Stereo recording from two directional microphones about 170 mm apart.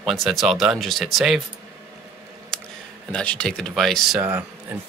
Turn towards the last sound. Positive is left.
turn(degrees=-10)  # may be behind; listen again after turning